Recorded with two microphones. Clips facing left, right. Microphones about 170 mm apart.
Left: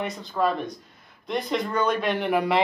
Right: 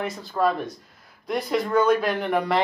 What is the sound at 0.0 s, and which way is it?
Speech, centre (ahead or behind).